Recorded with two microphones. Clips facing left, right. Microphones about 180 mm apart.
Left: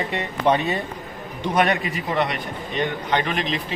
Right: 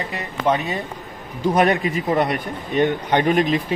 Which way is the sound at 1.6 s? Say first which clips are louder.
Right 2 dB; 40° right (ahead or behind).